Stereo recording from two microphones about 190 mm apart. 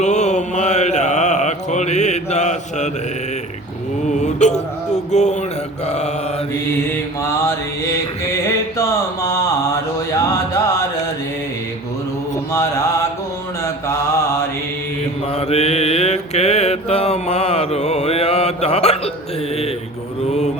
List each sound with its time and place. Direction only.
0.0 s mantra: 35° left (ahead or behind)
4.1 s a sound: 40° left (ahead or behind)
6.9 s mantra: 10° left (ahead or behind)
10.1 s music: 15° left (ahead or behind)
12.5 s mantra: 15° left (ahead or behind)
15.4 s mantra: 35° left (ahead or behind)